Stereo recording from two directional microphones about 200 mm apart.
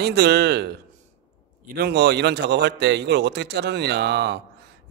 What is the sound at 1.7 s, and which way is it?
A man's voice, 55° right (ahead or behind).